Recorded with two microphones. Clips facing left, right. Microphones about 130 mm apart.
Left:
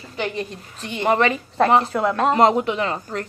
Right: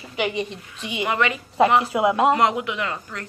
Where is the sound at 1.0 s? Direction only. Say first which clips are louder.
Left 5 dB; 35° left (ahead or behind).